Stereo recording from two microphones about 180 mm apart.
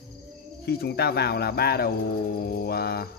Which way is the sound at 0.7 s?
65° left (ahead or behind).